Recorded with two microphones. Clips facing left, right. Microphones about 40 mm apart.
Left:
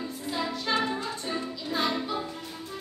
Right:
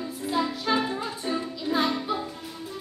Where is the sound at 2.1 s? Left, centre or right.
Centre.